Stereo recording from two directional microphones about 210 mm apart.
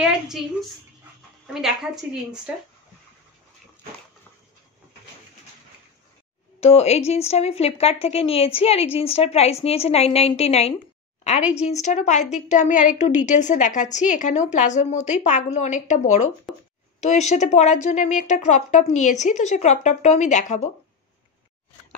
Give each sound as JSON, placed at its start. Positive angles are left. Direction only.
{"t": 0.0, "sound": "a woman's voice", "side_deg": 0}
{"t": 6.6, "sound": "a woman's voice", "side_deg": 30}
{"t": 16.5, "sound": "a woman's voice", "side_deg": 0}
{"t": 17.0, "sound": "a woman's voice", "side_deg": 35}